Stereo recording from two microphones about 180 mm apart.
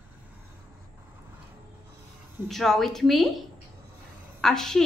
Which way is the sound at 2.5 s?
Centre (ahead or behind).